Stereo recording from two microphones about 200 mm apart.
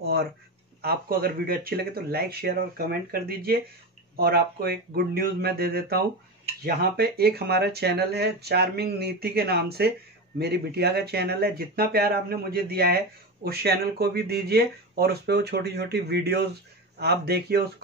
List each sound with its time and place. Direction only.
0.0 s speech: 55° right (ahead or behind)